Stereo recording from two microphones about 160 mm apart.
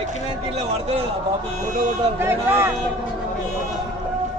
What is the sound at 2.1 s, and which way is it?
Speech, 15° right (ahead or behind).